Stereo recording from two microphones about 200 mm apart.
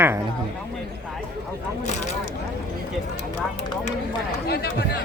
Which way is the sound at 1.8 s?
35° left (ahead or behind).